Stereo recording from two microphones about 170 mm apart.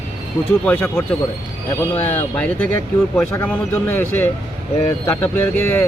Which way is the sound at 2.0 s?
40° left (ahead or behind).